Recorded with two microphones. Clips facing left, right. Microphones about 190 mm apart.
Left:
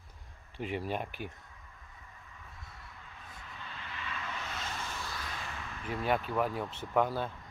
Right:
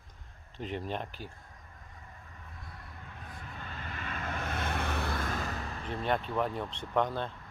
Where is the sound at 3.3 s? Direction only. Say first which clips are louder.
Right 3 dB; 45° right (ahead or behind).